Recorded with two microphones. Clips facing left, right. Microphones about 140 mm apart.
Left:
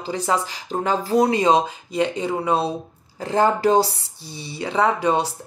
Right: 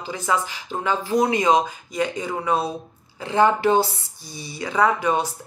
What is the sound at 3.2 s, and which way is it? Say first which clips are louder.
Speech: even; 40° left (ahead or behind).